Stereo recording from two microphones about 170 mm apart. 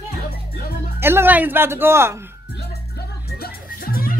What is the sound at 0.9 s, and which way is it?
A woman's voice, 15° right (ahead or behind).